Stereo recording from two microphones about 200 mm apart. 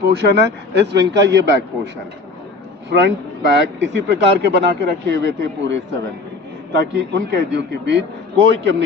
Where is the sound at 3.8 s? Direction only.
60° right (ahead or behind).